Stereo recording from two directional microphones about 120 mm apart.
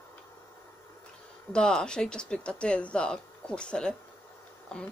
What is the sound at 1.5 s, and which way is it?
Speech, 5° left (ahead or behind).